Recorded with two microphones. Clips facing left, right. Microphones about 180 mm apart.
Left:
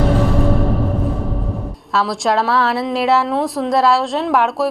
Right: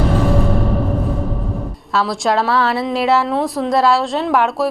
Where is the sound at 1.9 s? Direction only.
Centre (ahead or behind).